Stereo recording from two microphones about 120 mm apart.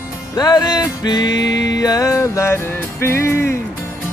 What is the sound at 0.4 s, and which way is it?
Music, 35° left (ahead or behind).